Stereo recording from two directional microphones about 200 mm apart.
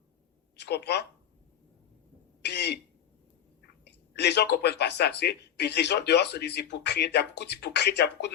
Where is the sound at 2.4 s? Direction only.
55° left (ahead or behind).